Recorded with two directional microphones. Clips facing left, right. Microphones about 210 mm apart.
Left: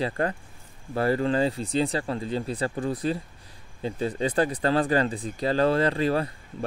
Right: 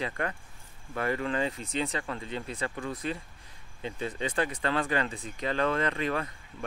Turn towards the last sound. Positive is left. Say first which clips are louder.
# left 6 dB
turn(degrees=35)  # may be behind; listen again after turning